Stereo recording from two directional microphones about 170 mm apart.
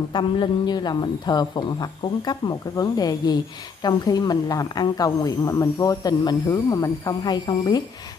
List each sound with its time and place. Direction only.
0.1 s speech: 25° left (ahead or behind)